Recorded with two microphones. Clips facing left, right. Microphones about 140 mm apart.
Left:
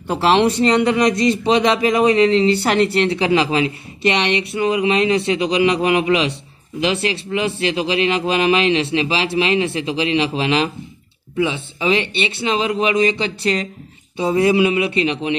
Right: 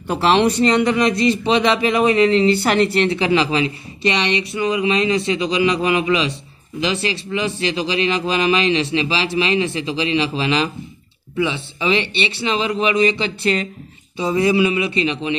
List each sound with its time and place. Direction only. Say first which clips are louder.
0.1 s a man's voice: left 1 dB; 35° left (ahead or behind)
3.5 s speech: left 1 dB; 55° left (ahead or behind)
11.3 s speech: left 1 dB; 45° left (ahead or behind)
14.1 s speech: left 2 dB; 55° left (ahead or behind)